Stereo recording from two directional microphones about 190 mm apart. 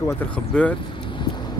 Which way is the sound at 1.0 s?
25° left (ahead or behind).